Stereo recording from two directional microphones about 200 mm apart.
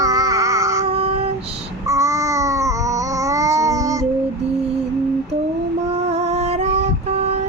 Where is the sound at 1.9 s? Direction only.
15° right (ahead or behind).